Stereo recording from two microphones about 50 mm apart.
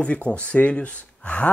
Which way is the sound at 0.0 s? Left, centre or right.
Left.